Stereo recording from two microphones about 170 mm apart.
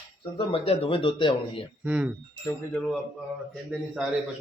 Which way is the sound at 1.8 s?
5° right (ahead or behind).